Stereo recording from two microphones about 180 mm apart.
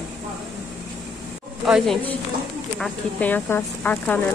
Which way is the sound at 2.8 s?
10° left (ahead or behind).